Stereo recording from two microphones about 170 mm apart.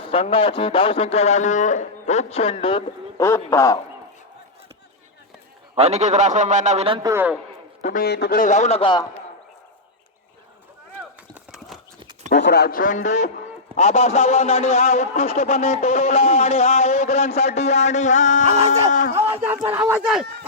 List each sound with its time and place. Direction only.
0.1 s a man's voice: 35° left (ahead or behind)
3.2 s a man's voice: 15° left (ahead or behind)
5.7 s a man's voice: 40° right (ahead or behind)
7.0 s speech: 15° right (ahead or behind)
7.8 s a man's voice: 45° left (ahead or behind)
8.0 s a man's voice: 75° left (ahead or behind)
8.4 s a man's voice: 45° left (ahead or behind); by 9.0 s 30° left (ahead or behind)
11.3 s clip-clop: centre (ahead or behind)
12.3 s a man's voice: 80° left; by 18.4 s 45° left (ahead or behind)
18.4 s speech: 40° right (ahead or behind)
19.1 s speech: 10° right (ahead or behind)